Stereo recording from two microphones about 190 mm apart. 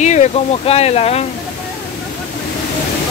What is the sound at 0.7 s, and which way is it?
Speech, 35° left (ahead or behind).